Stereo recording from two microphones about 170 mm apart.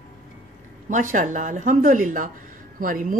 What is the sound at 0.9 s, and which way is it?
Speech, 50° right (ahead or behind).